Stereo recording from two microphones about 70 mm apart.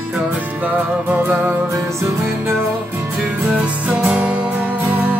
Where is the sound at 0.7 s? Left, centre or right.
Right.